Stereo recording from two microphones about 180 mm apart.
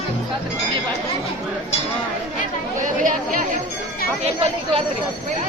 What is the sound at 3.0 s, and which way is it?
Speech, 50° right (ahead or behind).